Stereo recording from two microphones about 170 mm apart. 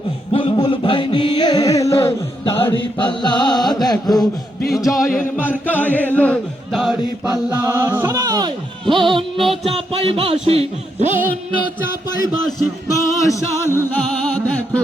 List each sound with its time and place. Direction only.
0.3 s a sound: 30° left (ahead or behind)
2.5 s music: 15° left (ahead or behind)
3.0 s chant: 30° left (ahead or behind)
4.7 s music: centre (ahead or behind)
5.4 s music: 10° left (ahead or behind)
7.6 s a capella: 20° right (ahead or behind)
9.4 s music: centre (ahead or behind)
9.7 s speech: 35° right (ahead or behind)
12.9 s music: 15° left (ahead or behind)